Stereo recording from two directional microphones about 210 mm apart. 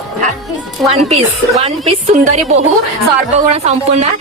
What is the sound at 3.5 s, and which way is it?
Speech, 30° right (ahead or behind).